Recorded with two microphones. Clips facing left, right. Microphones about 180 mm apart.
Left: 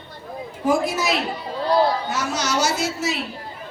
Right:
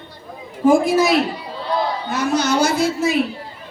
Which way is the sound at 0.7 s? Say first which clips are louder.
Right 7 dB; 50° right (ahead or behind).